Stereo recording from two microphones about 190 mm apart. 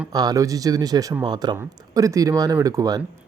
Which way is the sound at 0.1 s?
20° right (ahead or behind).